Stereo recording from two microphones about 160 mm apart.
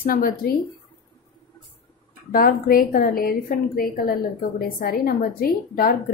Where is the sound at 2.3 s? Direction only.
65° left (ahead or behind).